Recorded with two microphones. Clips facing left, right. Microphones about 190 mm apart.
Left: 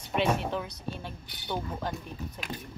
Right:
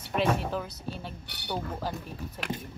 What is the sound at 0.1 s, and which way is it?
Speech, centre (ahead or behind).